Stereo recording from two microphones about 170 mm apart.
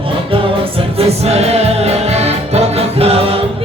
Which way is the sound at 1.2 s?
40° right (ahead or behind).